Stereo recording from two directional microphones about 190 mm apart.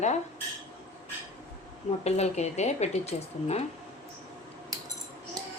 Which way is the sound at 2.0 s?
35° left (ahead or behind).